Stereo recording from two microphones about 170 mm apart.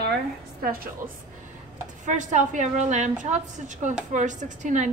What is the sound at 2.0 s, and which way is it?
A woman's voice, 45° right (ahead or behind).